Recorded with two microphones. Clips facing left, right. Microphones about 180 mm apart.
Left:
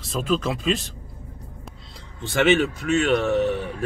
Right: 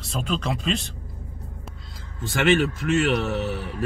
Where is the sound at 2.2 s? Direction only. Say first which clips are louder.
Left 1 dB; centre (ahead or behind).